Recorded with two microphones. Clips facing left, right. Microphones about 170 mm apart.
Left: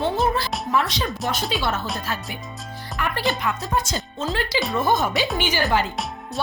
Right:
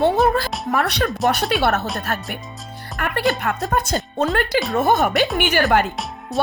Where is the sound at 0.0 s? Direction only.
50° right (ahead or behind).